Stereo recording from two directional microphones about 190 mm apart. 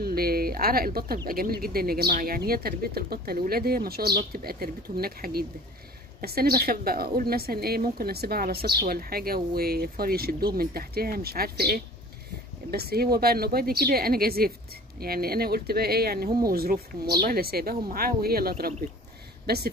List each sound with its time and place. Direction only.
0.0 s a woman's voice: 50° right (ahead or behind)